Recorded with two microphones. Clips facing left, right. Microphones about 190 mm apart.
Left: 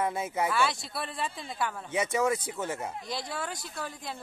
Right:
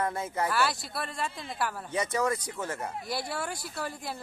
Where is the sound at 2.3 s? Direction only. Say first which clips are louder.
Left 1 dB; 25° left (ahead or behind).